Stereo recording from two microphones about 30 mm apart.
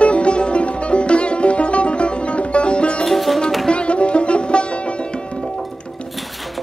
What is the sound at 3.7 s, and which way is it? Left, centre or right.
Music, left.